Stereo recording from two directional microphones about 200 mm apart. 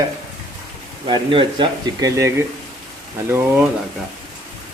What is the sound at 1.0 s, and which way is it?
Speech, 25° right (ahead or behind).